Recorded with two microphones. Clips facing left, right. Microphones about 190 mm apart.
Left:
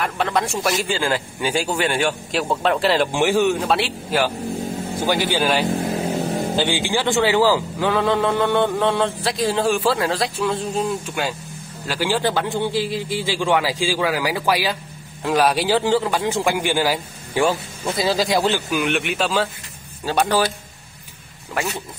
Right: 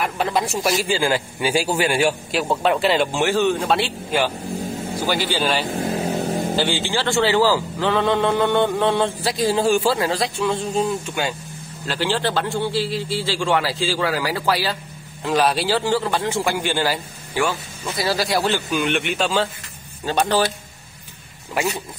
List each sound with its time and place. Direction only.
0.0 s speech: centre (ahead or behind)
3.1 s a man's voice: 15° left (ahead or behind)
5.0 s a man's voice: 15° left (ahead or behind); by 11.3 s centre (ahead or behind)
11.9 s a man's voice: 10° left (ahead or behind)
17.4 s speech: 30° left (ahead or behind)
18.0 s a man's voice: 15° left (ahead or behind)
18.7 s a man's voice: centre (ahead or behind)